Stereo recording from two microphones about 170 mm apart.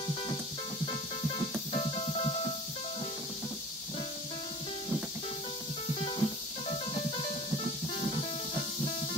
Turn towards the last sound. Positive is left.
turn(degrees=30)  # may be behind; listen again after turning